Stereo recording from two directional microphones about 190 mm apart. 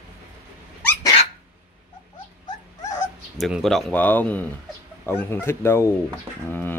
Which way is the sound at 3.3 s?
Centre (ahead or behind).